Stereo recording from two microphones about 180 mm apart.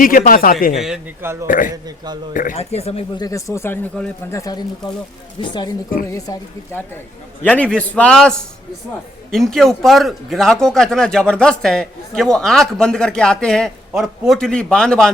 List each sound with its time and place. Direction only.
0.0 s speech: 50° left (ahead or behind)
1.2 s a man's voice: 15° right (ahead or behind)
1.5 s speech: 50° left (ahead or behind)
2.6 s speech: 35° left (ahead or behind)
3.2 s a woman's voice: 20° left (ahead or behind)
7.4 s speech: 5° left (ahead or behind)